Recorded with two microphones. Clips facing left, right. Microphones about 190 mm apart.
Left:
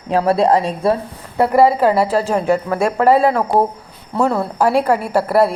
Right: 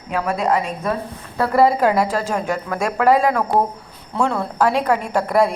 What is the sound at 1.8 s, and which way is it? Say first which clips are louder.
A woman's voice: left 3 dB; 5° left (ahead or behind).